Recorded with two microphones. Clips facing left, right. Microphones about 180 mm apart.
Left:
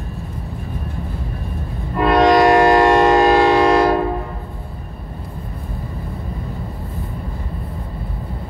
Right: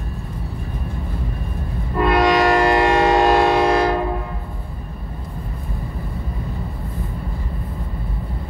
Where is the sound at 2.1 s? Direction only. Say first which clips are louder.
Left 4 dB; 55° left (ahead or behind).